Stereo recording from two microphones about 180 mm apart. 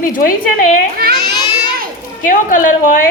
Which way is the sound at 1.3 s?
25° left (ahead or behind).